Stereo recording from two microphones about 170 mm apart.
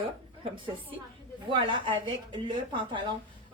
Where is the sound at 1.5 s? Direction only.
25° right (ahead or behind).